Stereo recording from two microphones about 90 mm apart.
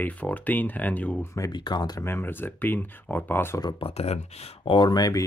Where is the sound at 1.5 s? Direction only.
55° left (ahead or behind).